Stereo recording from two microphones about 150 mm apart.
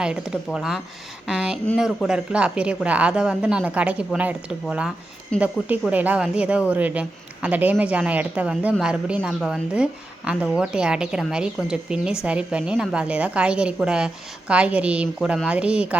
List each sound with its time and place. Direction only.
0.0 s a woman's voice: 5° right (ahead or behind)